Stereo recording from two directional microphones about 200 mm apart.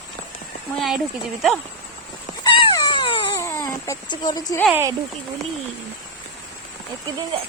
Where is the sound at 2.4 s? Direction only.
20° left (ahead or behind).